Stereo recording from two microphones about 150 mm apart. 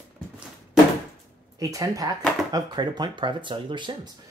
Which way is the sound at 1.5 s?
25° right (ahead or behind).